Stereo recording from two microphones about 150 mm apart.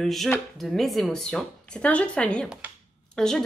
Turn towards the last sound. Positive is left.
turn(degrees=5)  # may be behind; listen again after turning